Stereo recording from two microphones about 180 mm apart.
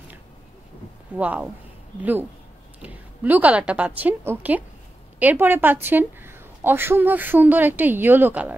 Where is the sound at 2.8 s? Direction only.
10° right (ahead or behind).